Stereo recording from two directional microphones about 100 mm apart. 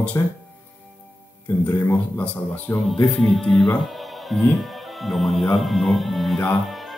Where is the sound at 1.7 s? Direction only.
25° left (ahead or behind).